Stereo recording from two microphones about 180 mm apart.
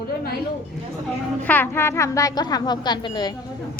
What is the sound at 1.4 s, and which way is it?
Speech, 10° left (ahead or behind).